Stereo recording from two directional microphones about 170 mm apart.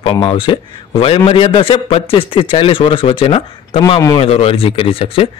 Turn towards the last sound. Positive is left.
turn(degrees=35)  # may be behind; listen again after turning